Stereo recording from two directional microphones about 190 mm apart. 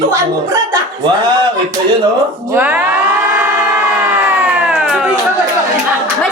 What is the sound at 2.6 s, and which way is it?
Speech, 10° right (ahead or behind).